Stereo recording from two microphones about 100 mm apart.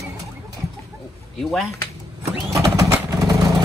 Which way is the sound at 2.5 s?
35° right (ahead or behind).